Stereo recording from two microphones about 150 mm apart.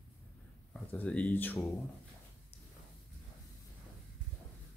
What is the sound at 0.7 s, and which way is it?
Speech, 10° left (ahead or behind).